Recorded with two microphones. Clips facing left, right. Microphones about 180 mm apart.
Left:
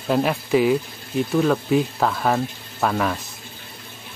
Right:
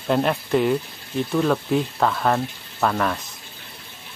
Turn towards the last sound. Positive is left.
turn(degrees=5)  # may be behind; listen again after turning